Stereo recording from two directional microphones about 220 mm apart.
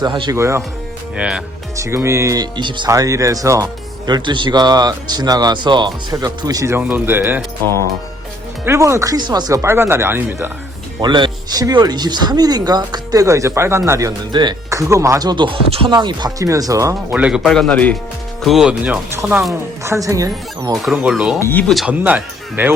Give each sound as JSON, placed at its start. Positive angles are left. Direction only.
{"t": 0.0, "sound": "speech", "side_deg": -20}
{"t": 8.6, "sound": "speech", "side_deg": -10}
{"t": 11.0, "sound": "speech", "side_deg": -20}
{"t": 17.1, "sound": "speech", "side_deg": -5}
{"t": 20.8, "sound": "speech", "side_deg": -5}
{"t": 21.3, "sound": "speech", "side_deg": 10}
{"t": 21.7, "sound": "speech", "side_deg": -5}